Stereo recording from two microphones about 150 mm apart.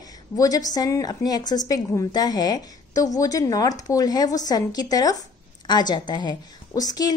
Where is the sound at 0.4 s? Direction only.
25° left (ahead or behind).